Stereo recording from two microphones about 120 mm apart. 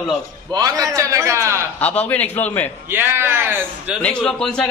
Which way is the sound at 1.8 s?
15° left (ahead or behind).